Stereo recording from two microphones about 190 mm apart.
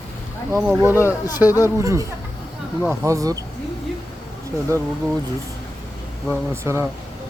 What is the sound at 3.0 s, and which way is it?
Speech, 15° right (ahead or behind).